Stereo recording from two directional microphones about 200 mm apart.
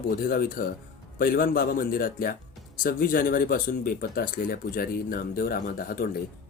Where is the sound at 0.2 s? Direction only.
45° left (ahead or behind).